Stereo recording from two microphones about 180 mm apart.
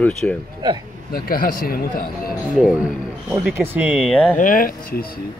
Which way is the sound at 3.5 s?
10° right (ahead or behind).